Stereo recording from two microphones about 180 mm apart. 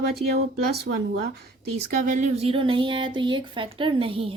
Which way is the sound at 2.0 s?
45° right (ahead or behind).